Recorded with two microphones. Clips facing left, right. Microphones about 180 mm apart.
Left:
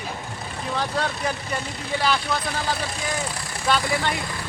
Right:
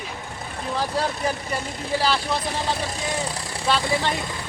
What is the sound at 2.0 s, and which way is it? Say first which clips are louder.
Speech: even; 30° right (ahead or behind).